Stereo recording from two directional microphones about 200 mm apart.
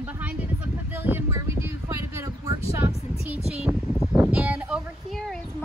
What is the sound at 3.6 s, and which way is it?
Speech, 5° right (ahead or behind).